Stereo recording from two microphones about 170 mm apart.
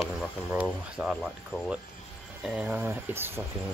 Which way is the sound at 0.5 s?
5° right (ahead or behind).